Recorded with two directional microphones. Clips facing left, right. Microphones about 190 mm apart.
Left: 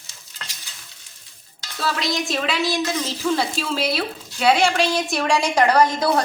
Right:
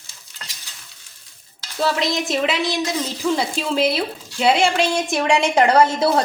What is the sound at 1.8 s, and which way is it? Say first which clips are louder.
A woman's voice: right 4 dB; 20° right (ahead or behind).